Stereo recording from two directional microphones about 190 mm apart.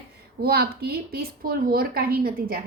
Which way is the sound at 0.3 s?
55° right (ahead or behind).